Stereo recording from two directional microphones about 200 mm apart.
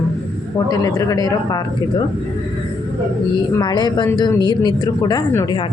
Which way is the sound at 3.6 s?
20° left (ahead or behind).